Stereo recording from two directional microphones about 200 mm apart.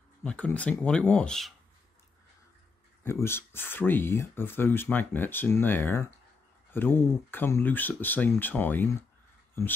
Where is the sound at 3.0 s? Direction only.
10° left (ahead or behind).